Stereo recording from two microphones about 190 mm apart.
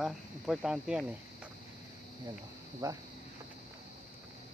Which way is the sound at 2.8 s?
20° right (ahead or behind).